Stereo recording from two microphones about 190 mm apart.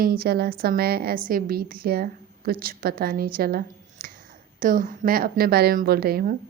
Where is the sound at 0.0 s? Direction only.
55° right (ahead or behind).